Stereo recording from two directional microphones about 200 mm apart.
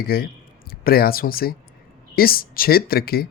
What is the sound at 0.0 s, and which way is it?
A woman's voice, 50° left (ahead or behind).